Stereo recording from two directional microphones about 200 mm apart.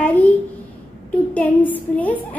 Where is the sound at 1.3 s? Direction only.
10° left (ahead or behind).